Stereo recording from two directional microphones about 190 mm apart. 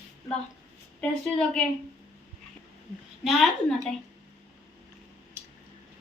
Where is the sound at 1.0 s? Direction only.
5° left (ahead or behind).